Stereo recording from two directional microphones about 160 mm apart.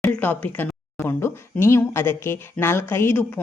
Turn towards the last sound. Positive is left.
turn(degrees=15)  # may be behind; listen again after turning